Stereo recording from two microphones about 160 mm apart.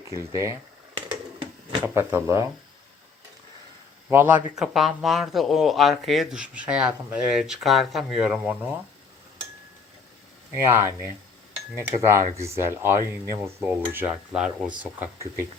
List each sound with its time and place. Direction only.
0.1 s speech: 20° right (ahead or behind)
1.8 s speech: 15° right (ahead or behind)
4.1 s speech: 10° right (ahead or behind)
10.5 s speech: 15° right (ahead or behind)